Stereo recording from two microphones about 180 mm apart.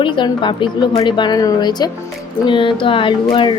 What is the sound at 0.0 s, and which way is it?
Speech, 25° left (ahead or behind).